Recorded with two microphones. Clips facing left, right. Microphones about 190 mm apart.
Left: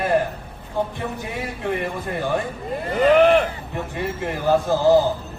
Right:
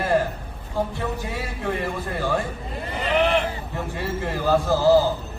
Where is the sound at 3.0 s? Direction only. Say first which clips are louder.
Left 7 dB; 45° left (ahead or behind).